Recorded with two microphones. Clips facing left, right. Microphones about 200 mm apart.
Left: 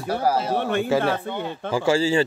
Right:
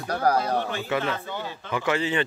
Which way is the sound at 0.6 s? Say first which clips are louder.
Left 6 dB; 60° left (ahead or behind).